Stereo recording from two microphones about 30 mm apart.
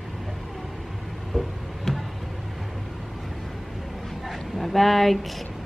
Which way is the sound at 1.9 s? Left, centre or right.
Centre.